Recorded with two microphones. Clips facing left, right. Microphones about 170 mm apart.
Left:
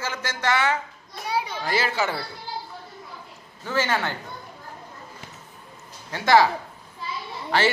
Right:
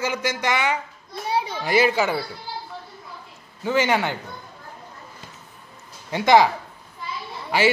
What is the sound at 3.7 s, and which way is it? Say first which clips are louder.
Speech: right 4 dB; 15° right (ahead or behind).